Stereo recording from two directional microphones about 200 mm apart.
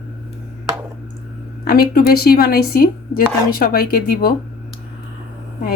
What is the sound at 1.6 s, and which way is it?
Speech, 50° left (ahead or behind).